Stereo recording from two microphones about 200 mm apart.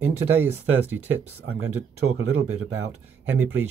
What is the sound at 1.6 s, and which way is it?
Speech, 90° right.